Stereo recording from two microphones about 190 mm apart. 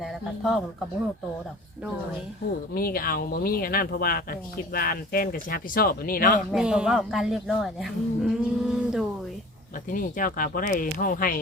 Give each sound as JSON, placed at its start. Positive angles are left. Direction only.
{"t": 0.0, "sound": "a sound", "side_deg": 0}
{"t": 2.7, "sound": "speech", "side_deg": 50}
{"t": 6.5, "sound": "speech", "side_deg": -5}
{"t": 9.9, "sound": "speech", "side_deg": 45}